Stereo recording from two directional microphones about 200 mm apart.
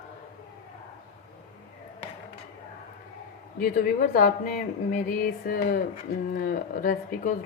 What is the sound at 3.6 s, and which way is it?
A woman's voice, 40° left (ahead or behind).